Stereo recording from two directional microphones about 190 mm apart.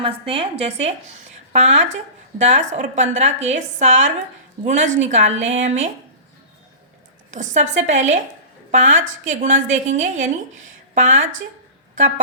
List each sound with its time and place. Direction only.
0.0 s a woman's voice: 30° right (ahead or behind)
7.3 s a woman's voice: 40° right (ahead or behind)